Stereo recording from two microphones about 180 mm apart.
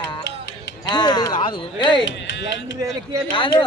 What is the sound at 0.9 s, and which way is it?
Speech, 25° left (ahead or behind).